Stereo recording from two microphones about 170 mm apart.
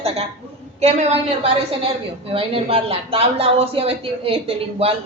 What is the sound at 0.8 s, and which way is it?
Speech, 40° right (ahead or behind).